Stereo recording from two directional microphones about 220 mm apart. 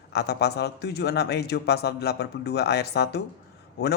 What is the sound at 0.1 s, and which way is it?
Speech, 50° left (ahead or behind).